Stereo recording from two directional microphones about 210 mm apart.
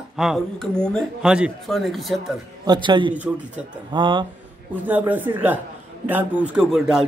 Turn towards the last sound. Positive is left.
turn(degrees=0)  # may be behind; listen again after turning